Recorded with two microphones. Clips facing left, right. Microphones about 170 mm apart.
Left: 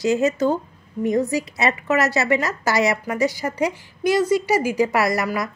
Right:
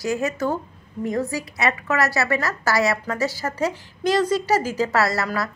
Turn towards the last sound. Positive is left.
turn(degrees=15)  # may be behind; listen again after turning